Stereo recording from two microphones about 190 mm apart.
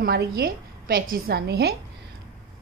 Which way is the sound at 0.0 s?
55° right (ahead or behind).